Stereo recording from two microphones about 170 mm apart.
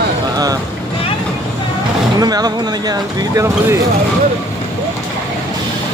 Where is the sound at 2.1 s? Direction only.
25° right (ahead or behind).